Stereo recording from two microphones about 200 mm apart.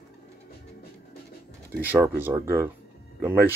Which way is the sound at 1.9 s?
10° right (ahead or behind).